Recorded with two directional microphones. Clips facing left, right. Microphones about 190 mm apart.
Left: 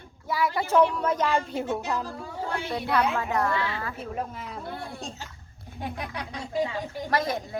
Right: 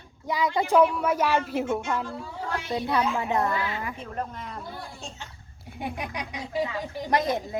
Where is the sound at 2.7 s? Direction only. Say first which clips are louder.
Even; 15° right (ahead or behind).